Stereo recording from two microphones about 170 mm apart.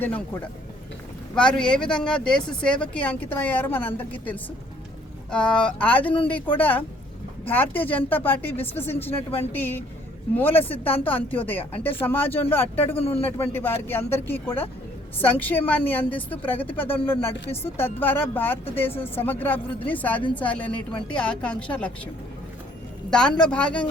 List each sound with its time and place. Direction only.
1.4 s speech: 5° left (ahead or behind)
11.0 s speech: 10° left (ahead or behind)
13.0 s a man's voice: 35° left (ahead or behind)
13.2 s speech: 10° left (ahead or behind)
23.0 s a man's voice: 5° left (ahead or behind)